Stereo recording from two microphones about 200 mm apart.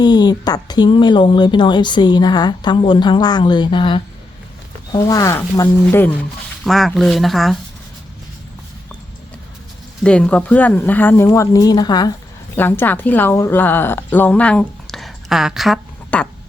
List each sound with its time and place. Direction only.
0.0 s speech: 20° left (ahead or behind); by 7.6 s centre (ahead or behind)
10.0 s a woman's voice: 5° left (ahead or behind)